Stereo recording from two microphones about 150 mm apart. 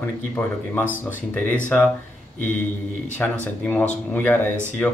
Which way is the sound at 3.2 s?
15° left (ahead or behind).